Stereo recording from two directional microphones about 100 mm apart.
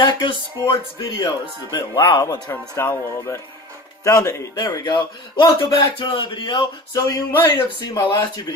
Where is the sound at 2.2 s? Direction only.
45° left (ahead or behind).